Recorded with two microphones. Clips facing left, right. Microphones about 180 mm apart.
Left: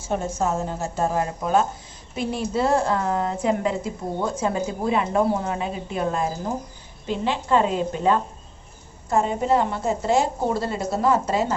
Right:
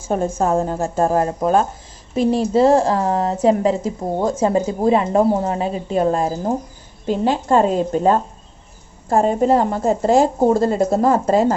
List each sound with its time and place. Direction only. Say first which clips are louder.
0.1 s a woman's voice: right 6 dB; 55° right (ahead or behind)